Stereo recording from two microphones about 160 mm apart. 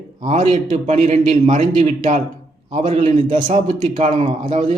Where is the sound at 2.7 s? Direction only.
50° right (ahead or behind).